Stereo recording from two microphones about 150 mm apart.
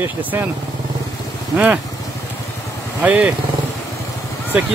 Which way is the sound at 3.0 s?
10° right (ahead or behind).